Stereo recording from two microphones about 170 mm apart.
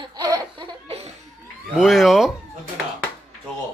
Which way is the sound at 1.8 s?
Centre (ahead or behind).